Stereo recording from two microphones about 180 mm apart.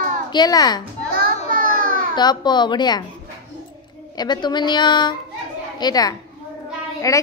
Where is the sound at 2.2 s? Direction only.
25° left (ahead or behind).